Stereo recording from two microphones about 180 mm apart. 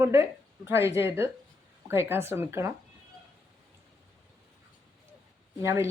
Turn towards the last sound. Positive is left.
turn(degrees=-15)  # may be behind; listen again after turning